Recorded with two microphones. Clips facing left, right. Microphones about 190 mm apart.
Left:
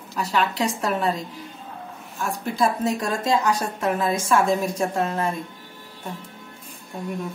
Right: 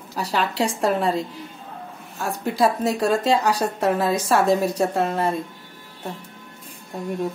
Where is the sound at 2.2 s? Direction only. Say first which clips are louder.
Right 2 dB; 35° right (ahead or behind).